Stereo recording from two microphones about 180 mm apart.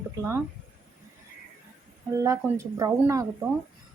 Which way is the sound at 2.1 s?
20° right (ahead or behind).